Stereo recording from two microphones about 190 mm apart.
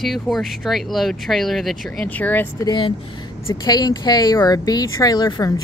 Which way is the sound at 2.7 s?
25° left (ahead or behind).